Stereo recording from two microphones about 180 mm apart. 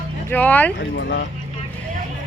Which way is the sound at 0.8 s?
80° left.